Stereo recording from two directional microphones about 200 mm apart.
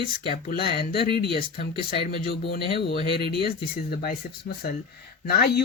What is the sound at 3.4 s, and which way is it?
Speech, 50° left (ahead or behind).